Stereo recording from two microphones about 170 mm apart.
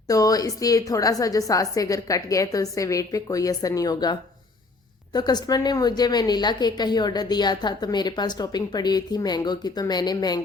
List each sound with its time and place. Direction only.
0.1 s a woman's voice: 20° left (ahead or behind)